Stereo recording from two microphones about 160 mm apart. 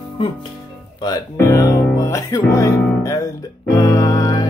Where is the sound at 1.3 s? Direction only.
20° left (ahead or behind).